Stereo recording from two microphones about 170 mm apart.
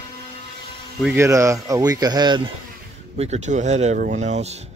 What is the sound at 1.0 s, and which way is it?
Speech, 10° right (ahead or behind).